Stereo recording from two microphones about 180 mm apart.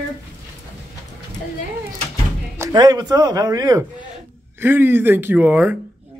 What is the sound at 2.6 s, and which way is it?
Speech, 20° right (ahead or behind).